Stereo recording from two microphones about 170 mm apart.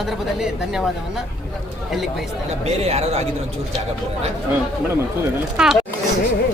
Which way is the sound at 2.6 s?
40° right (ahead or behind).